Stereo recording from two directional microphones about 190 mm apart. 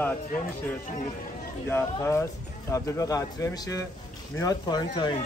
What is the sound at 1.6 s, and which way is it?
Speech, 15° left (ahead or behind).